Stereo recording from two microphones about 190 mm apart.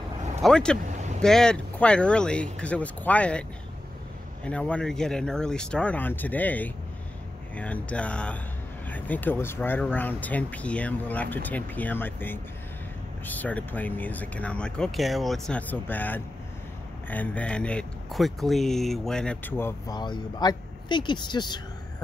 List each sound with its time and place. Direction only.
0.4 s speech: 5° left (ahead or behind)
4.5 s speech: 5° left (ahead or behind)
20.0 s speech: 20° left (ahead or behind)